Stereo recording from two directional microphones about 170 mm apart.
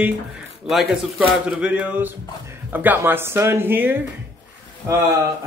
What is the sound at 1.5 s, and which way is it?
Speech, 5° right (ahead or behind).